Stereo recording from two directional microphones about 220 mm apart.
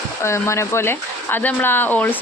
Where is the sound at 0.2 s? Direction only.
10° left (ahead or behind).